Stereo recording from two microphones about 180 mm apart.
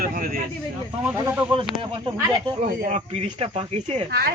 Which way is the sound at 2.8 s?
40° right (ahead or behind).